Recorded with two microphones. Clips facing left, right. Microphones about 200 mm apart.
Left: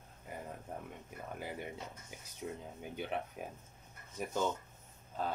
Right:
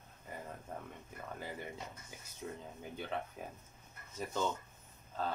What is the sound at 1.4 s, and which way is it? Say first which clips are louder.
Speech: left 2 dB; 15° left (ahead or behind).